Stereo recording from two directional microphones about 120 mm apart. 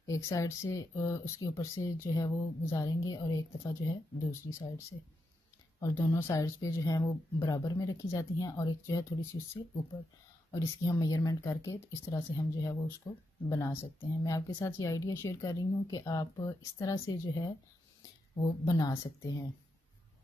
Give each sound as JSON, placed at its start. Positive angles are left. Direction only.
{"t": 0.0, "sound": "speech", "side_deg": 25}
{"t": 10.5, "sound": "speech", "side_deg": 30}
{"t": 18.7, "sound": "a woman's voice", "side_deg": 30}